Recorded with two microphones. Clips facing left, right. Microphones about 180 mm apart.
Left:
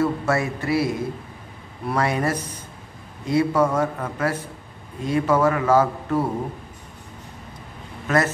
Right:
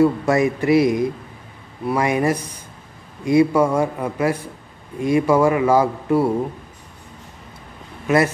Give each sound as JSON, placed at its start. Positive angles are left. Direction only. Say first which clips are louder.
{"t": 0.0, "sound": "a man's voice", "louder": "right 6 dB", "side_deg": -15}